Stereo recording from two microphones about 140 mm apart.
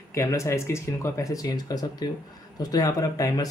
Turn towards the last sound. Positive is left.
turn(degrees=25)  # may be behind; listen again after turning